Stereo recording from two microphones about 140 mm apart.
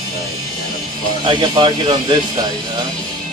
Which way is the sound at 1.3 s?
35° right (ahead or behind).